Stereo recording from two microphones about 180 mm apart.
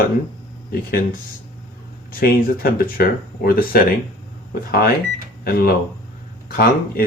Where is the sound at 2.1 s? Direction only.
55° left (ahead or behind).